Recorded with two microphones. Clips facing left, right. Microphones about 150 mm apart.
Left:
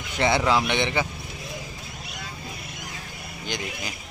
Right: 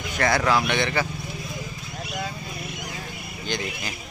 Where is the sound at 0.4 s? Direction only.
20° left (ahead or behind).